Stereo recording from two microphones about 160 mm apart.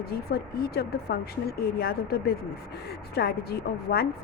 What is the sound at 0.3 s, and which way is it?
A woman's voice, 80° left.